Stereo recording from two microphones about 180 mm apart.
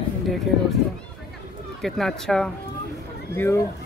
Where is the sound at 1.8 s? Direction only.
Centre (ahead or behind).